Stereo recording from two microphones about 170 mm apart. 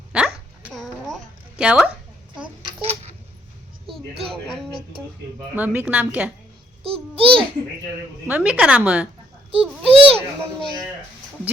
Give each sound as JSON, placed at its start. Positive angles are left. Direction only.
{"t": 0.1, "sound": "a sound", "side_deg": -5}
{"t": 4.3, "sound": "a sound", "side_deg": 5}
{"t": 5.5, "sound": "a woman's voice", "side_deg": -10}
{"t": 6.8, "sound": "babbling", "side_deg": -35}
{"t": 8.3, "sound": "a woman's voice", "side_deg": -10}
{"t": 9.5, "sound": "a child's voice", "side_deg": -35}
{"t": 10.2, "sound": "a child's voice", "side_deg": 5}